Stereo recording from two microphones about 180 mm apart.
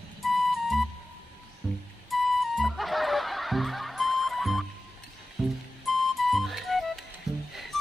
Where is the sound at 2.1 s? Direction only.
Centre (ahead or behind).